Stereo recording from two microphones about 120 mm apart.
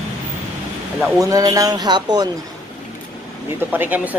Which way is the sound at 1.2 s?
30° right (ahead or behind).